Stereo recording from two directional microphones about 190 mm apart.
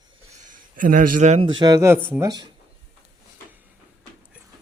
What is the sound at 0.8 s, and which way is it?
Speech, 45° right (ahead or behind).